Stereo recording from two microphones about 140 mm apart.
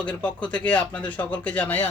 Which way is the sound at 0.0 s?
10° left (ahead or behind).